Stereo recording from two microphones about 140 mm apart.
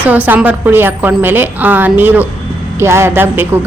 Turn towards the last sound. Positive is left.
turn(degrees=-15)  # may be behind; listen again after turning